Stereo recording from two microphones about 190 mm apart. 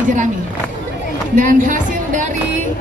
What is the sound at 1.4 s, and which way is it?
Speech, 45° right (ahead or behind).